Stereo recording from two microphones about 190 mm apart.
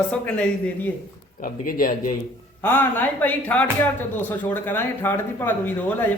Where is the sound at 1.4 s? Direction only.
50° left (ahead or behind).